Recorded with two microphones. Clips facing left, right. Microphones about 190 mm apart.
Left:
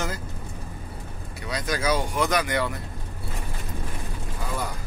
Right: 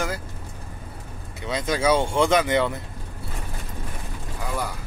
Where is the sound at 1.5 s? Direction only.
25° right (ahead or behind).